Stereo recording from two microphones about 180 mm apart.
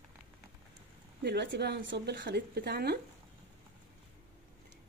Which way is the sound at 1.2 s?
70° right (ahead or behind).